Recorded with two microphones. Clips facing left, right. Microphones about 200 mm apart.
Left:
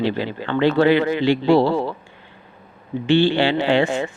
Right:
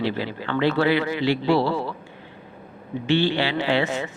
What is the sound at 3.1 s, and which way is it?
Speech, 30° left (ahead or behind).